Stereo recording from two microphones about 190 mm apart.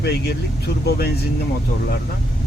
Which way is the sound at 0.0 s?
60° left (ahead or behind).